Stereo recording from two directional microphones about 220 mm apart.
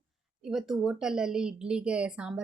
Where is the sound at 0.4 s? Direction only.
Centre (ahead or behind).